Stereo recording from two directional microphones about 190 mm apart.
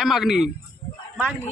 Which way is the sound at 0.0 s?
Centre (ahead or behind).